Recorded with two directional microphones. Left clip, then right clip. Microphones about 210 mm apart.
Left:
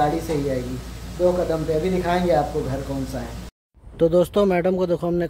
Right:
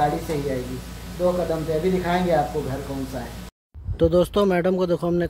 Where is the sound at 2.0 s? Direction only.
5° left (ahead or behind).